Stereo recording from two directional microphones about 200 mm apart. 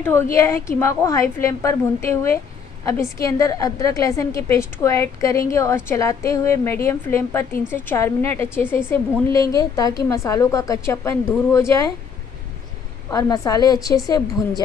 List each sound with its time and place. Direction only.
0.0 s a woman's voice: 15° left (ahead or behind)
13.1 s a woman's voice: 15° left (ahead or behind)